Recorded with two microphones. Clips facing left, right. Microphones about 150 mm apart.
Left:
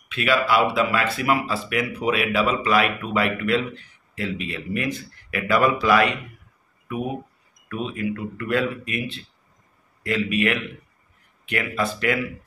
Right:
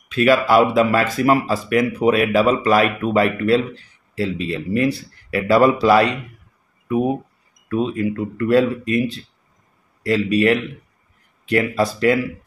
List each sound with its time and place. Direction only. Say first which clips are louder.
0.1 s speech: right 6 dB; 40° right (ahead or behind)
7.6 s speech: right 7 dB; 35° right (ahead or behind)